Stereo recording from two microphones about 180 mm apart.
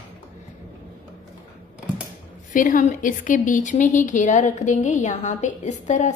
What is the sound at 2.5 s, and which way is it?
A woman's voice, 45° left (ahead or behind).